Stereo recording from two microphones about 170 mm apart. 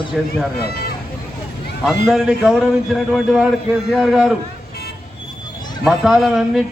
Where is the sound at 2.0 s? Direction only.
5° right (ahead or behind).